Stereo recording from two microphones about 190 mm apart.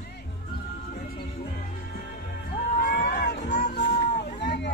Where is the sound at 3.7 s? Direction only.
60° left (ahead or behind).